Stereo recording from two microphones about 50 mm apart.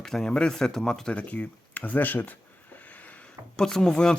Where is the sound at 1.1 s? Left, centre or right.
Left.